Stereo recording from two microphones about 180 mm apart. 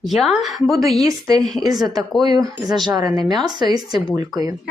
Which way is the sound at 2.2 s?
20° right (ahead or behind).